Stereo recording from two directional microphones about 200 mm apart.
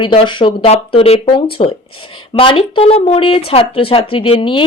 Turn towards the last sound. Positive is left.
turn(degrees=25)  # may be behind; listen again after turning